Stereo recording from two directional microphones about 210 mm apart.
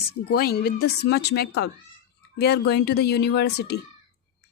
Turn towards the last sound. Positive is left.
turn(degrees=50)  # may be behind; listen again after turning